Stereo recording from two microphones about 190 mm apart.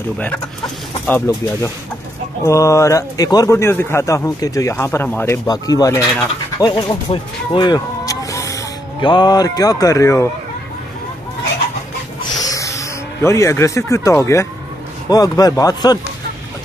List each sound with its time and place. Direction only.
1.0 s speech: 15° left (ahead or behind)
12.4 s music: 20° left (ahead or behind)
15.0 s speech: 20° left (ahead or behind)